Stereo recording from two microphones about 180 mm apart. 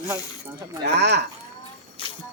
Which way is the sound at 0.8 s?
70° right (ahead or behind).